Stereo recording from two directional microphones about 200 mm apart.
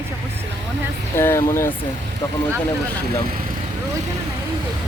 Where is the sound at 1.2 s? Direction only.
10° left (ahead or behind).